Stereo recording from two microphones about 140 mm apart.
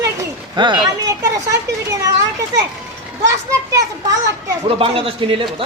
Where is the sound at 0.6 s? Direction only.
30° right (ahead or behind).